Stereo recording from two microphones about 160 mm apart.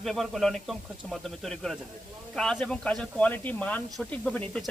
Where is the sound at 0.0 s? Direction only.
Centre (ahead or behind).